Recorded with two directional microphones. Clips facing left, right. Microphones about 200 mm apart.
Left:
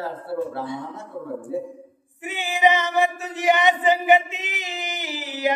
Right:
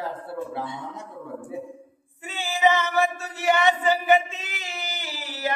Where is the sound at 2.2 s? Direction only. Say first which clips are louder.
Left 2 dB; 15° left (ahead or behind).